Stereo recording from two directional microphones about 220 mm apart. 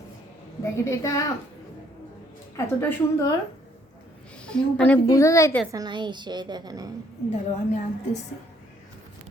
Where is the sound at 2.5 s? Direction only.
15° left (ahead or behind).